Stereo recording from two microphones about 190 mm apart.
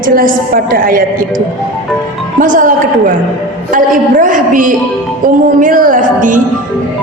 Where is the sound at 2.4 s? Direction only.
45° right (ahead or behind).